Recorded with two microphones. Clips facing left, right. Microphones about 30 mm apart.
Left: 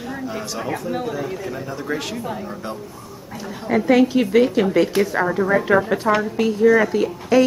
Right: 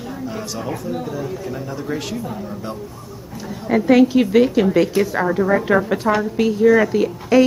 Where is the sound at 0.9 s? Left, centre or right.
Left.